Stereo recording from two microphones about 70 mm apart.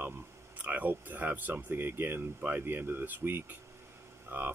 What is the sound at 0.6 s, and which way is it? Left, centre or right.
Speech, right.